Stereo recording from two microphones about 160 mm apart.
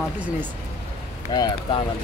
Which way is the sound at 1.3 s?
25° left (ahead or behind).